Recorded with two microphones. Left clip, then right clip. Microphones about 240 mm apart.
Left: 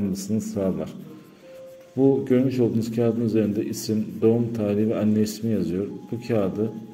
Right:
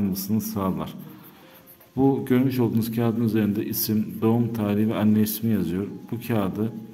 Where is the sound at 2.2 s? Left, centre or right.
Right.